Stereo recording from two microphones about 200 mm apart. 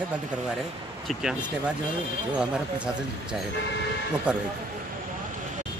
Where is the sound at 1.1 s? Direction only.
Centre (ahead or behind).